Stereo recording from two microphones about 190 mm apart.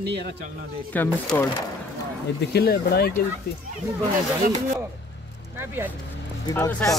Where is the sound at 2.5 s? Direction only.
60° left (ahead or behind).